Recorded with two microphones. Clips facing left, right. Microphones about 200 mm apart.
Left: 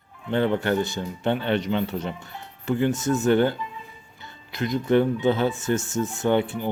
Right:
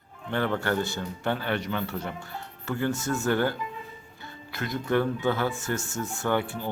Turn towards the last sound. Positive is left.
turn(degrees=20)  # may be behind; listen again after turning